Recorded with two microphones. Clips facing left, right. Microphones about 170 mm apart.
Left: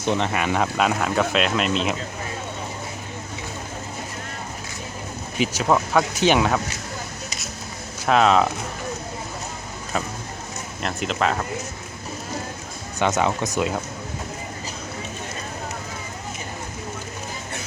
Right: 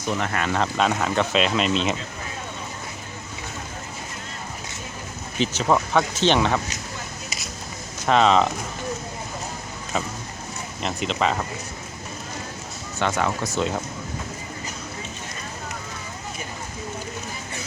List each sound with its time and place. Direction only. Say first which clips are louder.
0.0 s speech: left 4 dB; 25° left (ahead or behind)
0.3 s speech: left 2 dB; 10° left (ahead or behind)
5.4 s speech: left 1 dB; 5° left (ahead or behind)
8.0 s speech: even; 5° left (ahead or behind)
9.9 s speech: even; centre (ahead or behind)
13.0 s speech: left 3 dB; 20° left (ahead or behind)
13.6 s speech: even; 5° left (ahead or behind)